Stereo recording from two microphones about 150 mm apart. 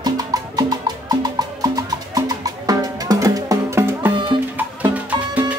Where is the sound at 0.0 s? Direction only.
25° right (ahead or behind).